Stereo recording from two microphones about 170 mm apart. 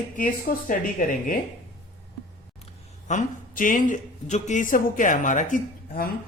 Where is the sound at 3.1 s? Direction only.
50° left (ahead or behind).